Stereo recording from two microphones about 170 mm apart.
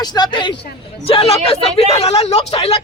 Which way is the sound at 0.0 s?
25° left (ahead or behind).